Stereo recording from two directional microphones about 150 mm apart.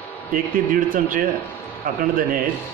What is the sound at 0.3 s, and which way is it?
Speech, 65° right (ahead or behind).